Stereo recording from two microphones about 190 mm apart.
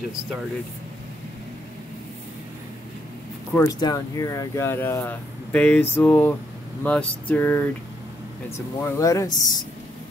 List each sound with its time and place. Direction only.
3.5 s speech: 20° left (ahead or behind)